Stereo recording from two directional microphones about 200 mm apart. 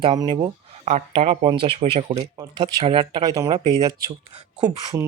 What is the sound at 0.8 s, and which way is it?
Speech, 35° right (ahead or behind).